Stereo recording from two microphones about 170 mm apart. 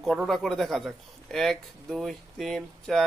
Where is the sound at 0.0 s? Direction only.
Centre (ahead or behind).